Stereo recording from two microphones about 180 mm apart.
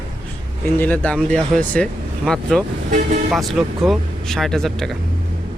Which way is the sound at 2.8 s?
45° right (ahead or behind).